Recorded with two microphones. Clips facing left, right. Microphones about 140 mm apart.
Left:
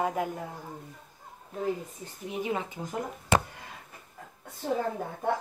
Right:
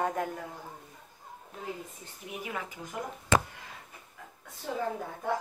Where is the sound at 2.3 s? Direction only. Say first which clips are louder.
Left 6 dB; 25° left (ahead or behind).